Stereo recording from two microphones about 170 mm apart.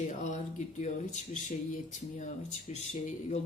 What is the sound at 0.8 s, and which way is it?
Speech, 45° left (ahead or behind).